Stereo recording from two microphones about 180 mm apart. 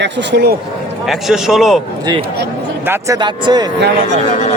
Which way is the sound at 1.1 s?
Centre (ahead or behind).